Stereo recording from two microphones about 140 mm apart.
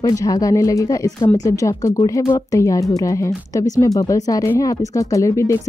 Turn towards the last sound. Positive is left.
turn(degrees=20)  # may be behind; listen again after turning